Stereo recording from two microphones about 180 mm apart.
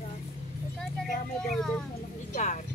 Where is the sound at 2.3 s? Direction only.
45° left (ahead or behind).